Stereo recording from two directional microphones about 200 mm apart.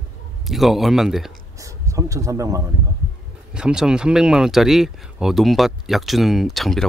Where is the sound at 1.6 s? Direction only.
15° right (ahead or behind).